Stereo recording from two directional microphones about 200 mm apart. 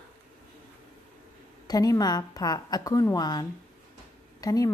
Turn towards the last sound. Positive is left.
turn(degrees=15)  # may be behind; listen again after turning